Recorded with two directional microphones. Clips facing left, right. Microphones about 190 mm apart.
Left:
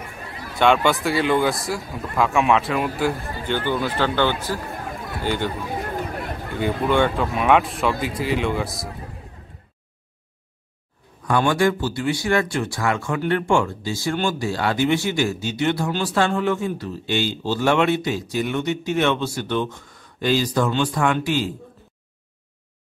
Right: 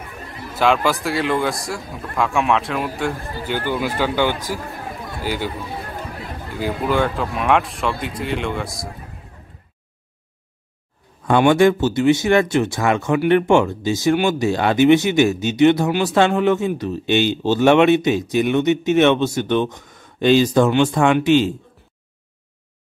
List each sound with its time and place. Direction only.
0.6 s speech: centre (ahead or behind)
3.5 s speech: 10° right (ahead or behind)
6.1 s a sound: 60° left (ahead or behind)
6.6 s speech: centre (ahead or behind)
11.2 s speech: 20° right (ahead or behind)